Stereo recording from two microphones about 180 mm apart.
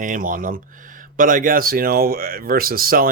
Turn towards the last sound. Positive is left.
turn(degrees=-55)  # may be behind; listen again after turning